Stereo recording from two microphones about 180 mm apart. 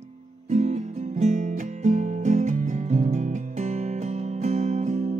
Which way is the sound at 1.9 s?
45° right (ahead or behind).